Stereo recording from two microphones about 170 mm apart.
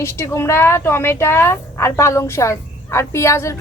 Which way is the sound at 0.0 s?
15° left (ahead or behind).